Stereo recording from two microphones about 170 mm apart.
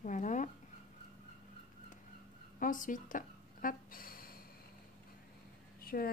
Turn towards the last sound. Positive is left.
turn(degrees=60)  # may be behind; listen again after turning